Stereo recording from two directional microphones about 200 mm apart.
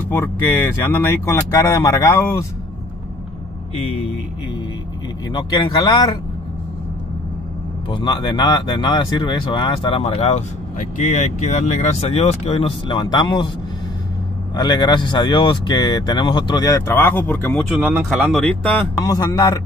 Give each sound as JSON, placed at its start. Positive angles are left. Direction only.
{"t": 0.1, "sound": "speech", "side_deg": 15}
{"t": 5.3, "sound": "speech", "side_deg": 20}
{"t": 7.9, "sound": "speech", "side_deg": 20}
{"t": 14.5, "sound": "speech", "side_deg": 20}
{"t": 17.7, "sound": "speech", "side_deg": -5}
{"t": 19.0, "sound": "speech", "side_deg": 20}